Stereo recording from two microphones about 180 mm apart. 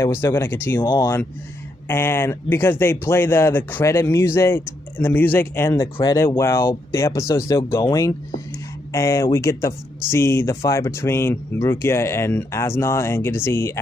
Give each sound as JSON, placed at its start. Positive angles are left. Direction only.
{"t": 0.0, "sound": "speech", "side_deg": 15}